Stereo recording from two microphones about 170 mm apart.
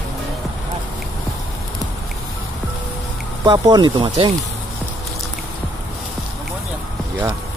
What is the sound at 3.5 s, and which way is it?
Speech, 25° right (ahead or behind).